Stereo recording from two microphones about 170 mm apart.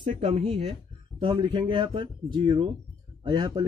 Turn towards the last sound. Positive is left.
turn(degrees=-25)  # may be behind; listen again after turning